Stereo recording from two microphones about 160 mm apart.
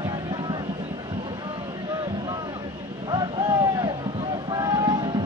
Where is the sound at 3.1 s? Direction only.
25° right (ahead or behind).